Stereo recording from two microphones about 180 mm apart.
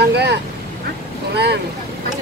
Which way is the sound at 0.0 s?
70° right (ahead or behind).